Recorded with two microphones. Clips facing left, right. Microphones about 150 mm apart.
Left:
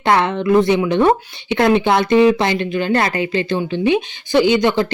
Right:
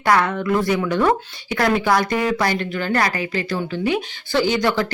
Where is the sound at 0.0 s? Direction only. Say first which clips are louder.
Left 3 dB; 25° left (ahead or behind).